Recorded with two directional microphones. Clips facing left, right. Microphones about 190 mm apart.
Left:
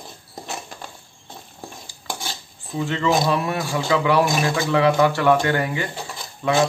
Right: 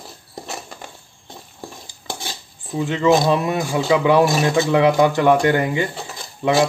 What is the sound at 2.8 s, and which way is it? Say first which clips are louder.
Speech: right 4 dB; 15° right (ahead or behind).